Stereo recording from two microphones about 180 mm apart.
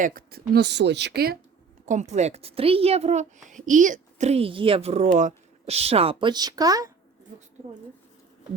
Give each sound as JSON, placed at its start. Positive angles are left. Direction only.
{"t": 0.0, "sound": "speech", "side_deg": -50}
{"t": 1.9, "sound": "a woman's voice", "side_deg": -40}